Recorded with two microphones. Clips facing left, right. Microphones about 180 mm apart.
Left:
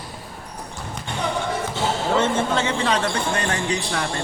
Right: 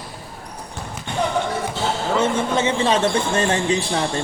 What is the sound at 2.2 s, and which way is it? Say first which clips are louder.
Speech: right 3 dB; 20° right (ahead or behind).